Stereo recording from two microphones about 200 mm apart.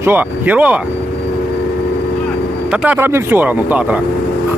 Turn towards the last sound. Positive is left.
turn(degrees=-10)  # may be behind; listen again after turning